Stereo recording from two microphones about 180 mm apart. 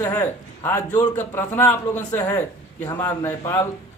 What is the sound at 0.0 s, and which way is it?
A man's voice, 15° left (ahead or behind).